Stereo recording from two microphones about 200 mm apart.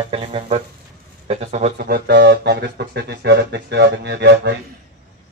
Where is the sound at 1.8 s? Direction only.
55° right (ahead or behind).